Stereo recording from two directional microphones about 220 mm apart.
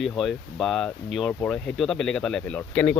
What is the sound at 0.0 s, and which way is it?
Speech, centre (ahead or behind).